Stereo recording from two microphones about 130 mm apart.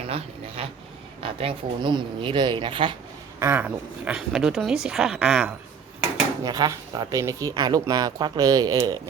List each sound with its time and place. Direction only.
0.1 s speech: 45° right (ahead or behind)
3.4 s speech: 15° right (ahead or behind)
6.4 s speech: 30° right (ahead or behind)